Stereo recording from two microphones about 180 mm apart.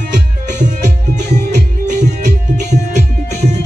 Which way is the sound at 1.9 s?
40° right (ahead or behind).